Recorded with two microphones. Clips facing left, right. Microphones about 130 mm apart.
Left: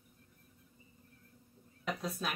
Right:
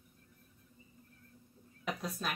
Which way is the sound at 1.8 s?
Centre (ahead or behind).